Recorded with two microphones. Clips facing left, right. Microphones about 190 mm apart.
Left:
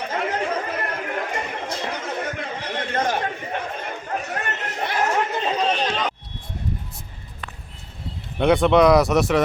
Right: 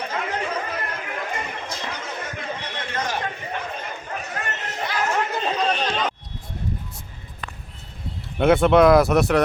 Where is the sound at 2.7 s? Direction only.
50° left (ahead or behind).